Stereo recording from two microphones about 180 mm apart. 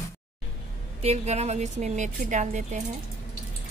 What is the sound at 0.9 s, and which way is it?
A woman's voice, 35° right (ahead or behind).